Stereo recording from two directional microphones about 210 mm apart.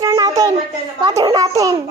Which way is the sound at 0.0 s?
15° right (ahead or behind).